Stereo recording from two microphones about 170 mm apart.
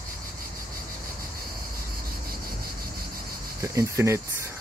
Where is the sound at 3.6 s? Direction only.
15° right (ahead or behind).